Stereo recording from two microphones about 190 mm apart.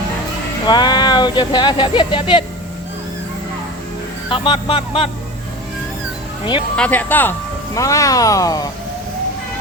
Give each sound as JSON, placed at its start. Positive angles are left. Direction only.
{"t": 0.6, "sound": "speech", "side_deg": 20}
{"t": 4.3, "sound": "speech", "side_deg": 25}
{"t": 6.7, "sound": "speech", "side_deg": 10}